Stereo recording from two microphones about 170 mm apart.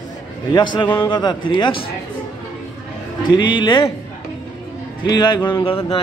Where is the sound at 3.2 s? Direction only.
25° left (ahead or behind).